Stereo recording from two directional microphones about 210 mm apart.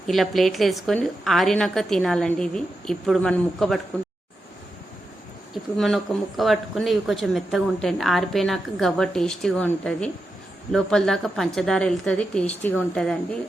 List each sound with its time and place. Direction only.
0.1 s speech: centre (ahead or behind)
5.7 s speech: centre (ahead or behind)